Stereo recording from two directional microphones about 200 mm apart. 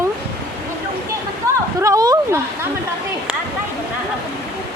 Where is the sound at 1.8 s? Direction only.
15° right (ahead or behind).